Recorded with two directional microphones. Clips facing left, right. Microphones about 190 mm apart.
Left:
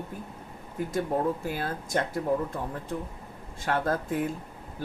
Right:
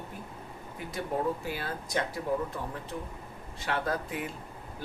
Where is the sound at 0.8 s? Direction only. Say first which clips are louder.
Left 5 dB; 45° left (ahead or behind).